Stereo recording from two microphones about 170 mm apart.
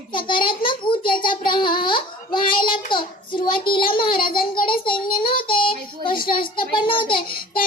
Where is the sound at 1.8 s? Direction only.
30° left (ahead or behind).